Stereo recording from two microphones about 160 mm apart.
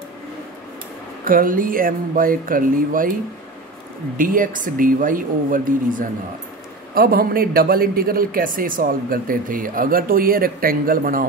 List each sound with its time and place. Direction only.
1.2 s a man's voice: 60° right (ahead or behind)
4.2 s a man's voice: 60° right (ahead or behind)
6.9 s a man's voice: 70° right (ahead or behind)